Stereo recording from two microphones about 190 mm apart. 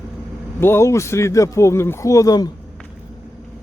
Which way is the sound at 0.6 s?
10° left (ahead or behind).